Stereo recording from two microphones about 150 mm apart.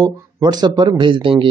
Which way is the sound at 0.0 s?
25° right (ahead or behind).